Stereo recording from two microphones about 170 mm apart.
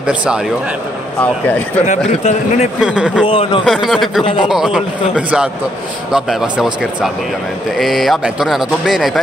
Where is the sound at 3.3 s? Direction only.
30° left (ahead or behind).